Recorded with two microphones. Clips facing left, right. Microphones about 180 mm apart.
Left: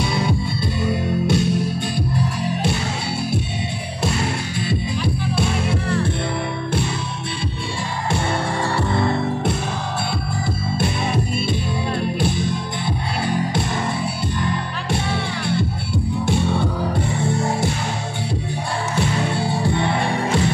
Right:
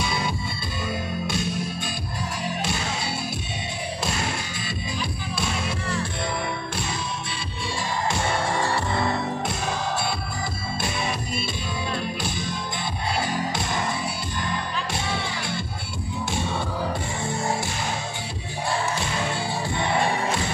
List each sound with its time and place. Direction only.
1.2 s music: 65° left (ahead or behind)
4.6 s music: 60° left (ahead or behind)
12.0 s music: 60° left (ahead or behind)
14.9 s music: 60° left (ahead or behind)